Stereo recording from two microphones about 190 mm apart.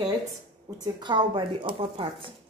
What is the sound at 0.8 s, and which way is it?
A woman's voice, 25° right (ahead or behind).